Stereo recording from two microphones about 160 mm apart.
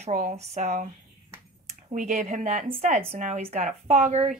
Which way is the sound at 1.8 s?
50° right (ahead or behind).